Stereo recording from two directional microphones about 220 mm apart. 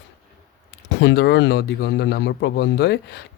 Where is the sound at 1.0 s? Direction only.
50° left (ahead or behind).